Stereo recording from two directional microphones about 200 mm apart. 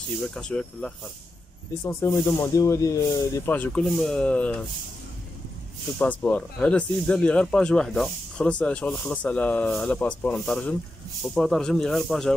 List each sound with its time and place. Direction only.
0.3 s speech: 5° left (ahead or behind)
1.9 s speech: 20° left (ahead or behind)
5.9 s speech: 10° left (ahead or behind)